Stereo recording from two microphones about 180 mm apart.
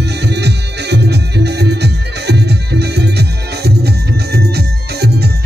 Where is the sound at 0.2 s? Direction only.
70° right (ahead or behind).